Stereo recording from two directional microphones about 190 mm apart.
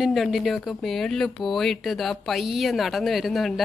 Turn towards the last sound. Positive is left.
turn(degrees=0)  # may be behind; listen again after turning